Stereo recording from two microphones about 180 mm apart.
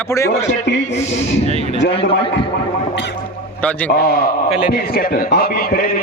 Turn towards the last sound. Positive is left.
turn(degrees=55)  # may be behind; listen again after turning